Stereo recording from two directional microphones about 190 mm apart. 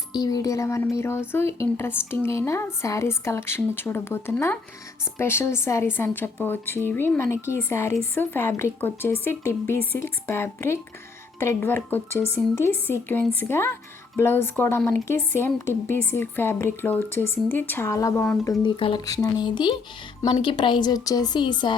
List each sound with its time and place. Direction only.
0.1 s a woman's voice: 20° left (ahead or behind)
18.6 s a woman's voice: 25° left (ahead or behind)